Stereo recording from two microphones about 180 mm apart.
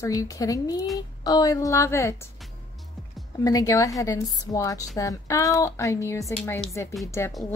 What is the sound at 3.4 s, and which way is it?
A woman's voice, 20° left (ahead or behind).